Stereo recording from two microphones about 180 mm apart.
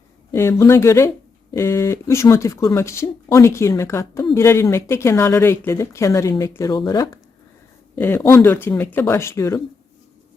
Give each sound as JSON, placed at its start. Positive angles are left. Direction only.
{"t": 0.3, "sound": "speech", "side_deg": 15}
{"t": 7.9, "sound": "speech", "side_deg": 10}